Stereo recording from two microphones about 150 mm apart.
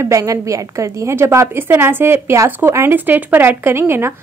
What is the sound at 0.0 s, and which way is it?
A woman's voice, 20° right (ahead or behind).